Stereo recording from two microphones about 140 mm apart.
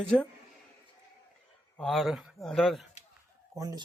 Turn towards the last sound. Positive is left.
turn(degrees=-25)  # may be behind; listen again after turning